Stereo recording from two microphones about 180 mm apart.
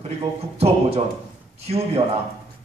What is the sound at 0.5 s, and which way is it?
A man's voice, 35° right (ahead or behind).